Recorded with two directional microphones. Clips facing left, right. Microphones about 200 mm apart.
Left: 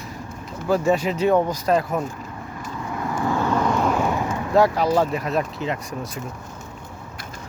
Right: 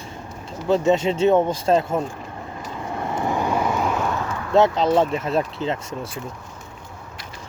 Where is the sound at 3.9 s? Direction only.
10° left (ahead or behind).